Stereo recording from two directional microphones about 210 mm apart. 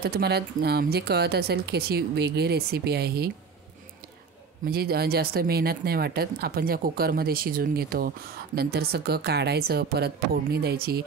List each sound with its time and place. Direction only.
0.0 s speech: 50° right (ahead or behind)
4.6 s speech: 45° right (ahead or behind)